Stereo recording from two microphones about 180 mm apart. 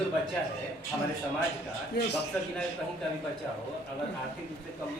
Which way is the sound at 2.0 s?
65° left (ahead or behind).